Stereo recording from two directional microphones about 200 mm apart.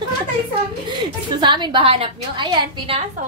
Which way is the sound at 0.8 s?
25° right (ahead or behind).